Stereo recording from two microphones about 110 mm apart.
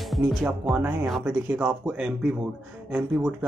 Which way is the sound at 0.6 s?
10° right (ahead or behind).